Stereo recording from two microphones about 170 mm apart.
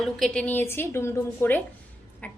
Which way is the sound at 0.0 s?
5° left (ahead or behind).